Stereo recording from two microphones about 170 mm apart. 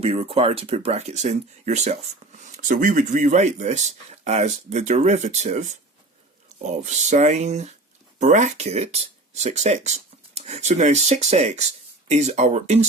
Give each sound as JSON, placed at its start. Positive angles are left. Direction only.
{"t": 0.0, "sound": "speech", "side_deg": -35}